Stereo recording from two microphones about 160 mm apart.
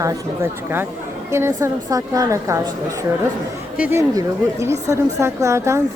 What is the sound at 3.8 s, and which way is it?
A woman's voice, 15° right (ahead or behind).